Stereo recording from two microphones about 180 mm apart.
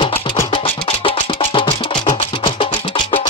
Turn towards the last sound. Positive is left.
turn(degrees=30)  # may be behind; listen again after turning